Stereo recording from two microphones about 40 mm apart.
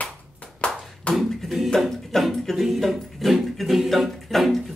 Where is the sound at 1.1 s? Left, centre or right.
Left.